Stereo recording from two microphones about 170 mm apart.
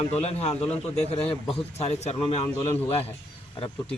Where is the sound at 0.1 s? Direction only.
40° left (ahead or behind).